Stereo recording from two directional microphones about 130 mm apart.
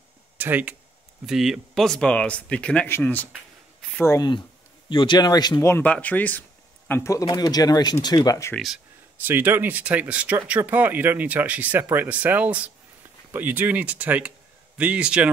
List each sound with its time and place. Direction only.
0.4 s speech: 15° right (ahead or behind)
1.2 s speech: 5° right (ahead or behind); by 4.2 s 15° left (ahead or behind)
4.2 s speech: 35° left (ahead or behind)
5.7 s speech: 10° left (ahead or behind)
6.9 s speech: 25° left (ahead or behind)
8.5 s speech: centre (ahead or behind)
9.2 s speech: 15° right (ahead or behind)